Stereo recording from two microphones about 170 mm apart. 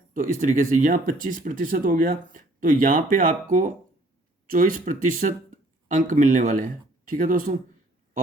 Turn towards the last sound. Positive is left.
turn(degrees=-55)  # may be behind; listen again after turning